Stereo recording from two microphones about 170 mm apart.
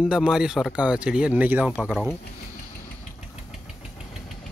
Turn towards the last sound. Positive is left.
turn(degrees=35)  # may be behind; listen again after turning